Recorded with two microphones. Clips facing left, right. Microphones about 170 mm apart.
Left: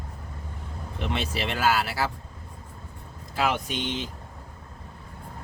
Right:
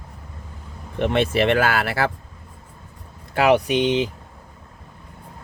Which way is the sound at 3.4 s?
70° right (ahead or behind).